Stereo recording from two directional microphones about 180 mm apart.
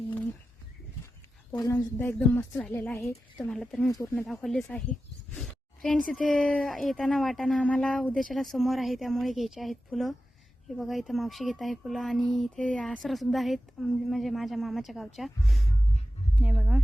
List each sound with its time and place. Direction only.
1.5 s speech: 20° left (ahead or behind)
2.0 s a woman's voice: 10° left (ahead or behind)
3.8 s a woman's voice: 15° left (ahead or behind)
4.3 s speech: centre (ahead or behind)